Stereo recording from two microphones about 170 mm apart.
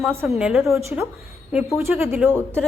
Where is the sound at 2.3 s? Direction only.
5° left (ahead or behind).